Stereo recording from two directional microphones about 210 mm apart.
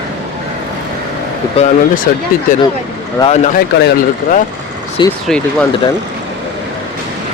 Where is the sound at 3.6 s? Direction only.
50° left (ahead or behind).